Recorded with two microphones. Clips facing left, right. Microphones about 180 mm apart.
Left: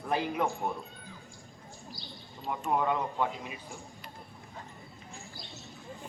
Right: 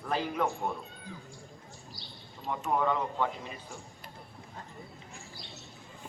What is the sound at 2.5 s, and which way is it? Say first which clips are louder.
Speech: even; 10° left (ahead or behind).